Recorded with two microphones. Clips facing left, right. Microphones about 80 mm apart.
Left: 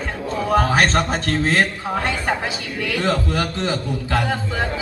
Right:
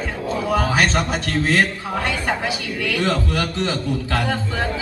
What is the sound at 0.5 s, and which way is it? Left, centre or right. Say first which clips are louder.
A man's voice: left 3 dB; left.